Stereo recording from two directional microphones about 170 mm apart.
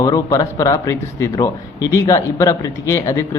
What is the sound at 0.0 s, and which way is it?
A man's voice, 20° left (ahead or behind).